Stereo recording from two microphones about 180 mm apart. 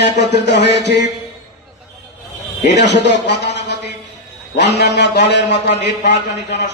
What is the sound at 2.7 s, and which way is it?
A man's voice, 70° left (ahead or behind).